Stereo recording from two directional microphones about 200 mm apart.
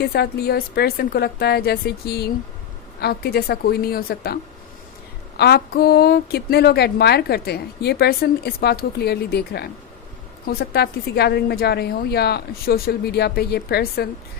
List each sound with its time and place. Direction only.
0.0 s a woman's voice: 50° left (ahead or behind)
5.4 s a woman's voice: 55° left (ahead or behind)